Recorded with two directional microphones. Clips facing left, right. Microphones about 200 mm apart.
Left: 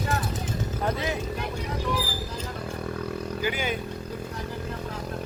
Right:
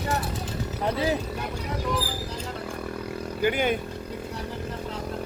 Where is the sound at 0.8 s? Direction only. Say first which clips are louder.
Right 4 dB; 30° right (ahead or behind).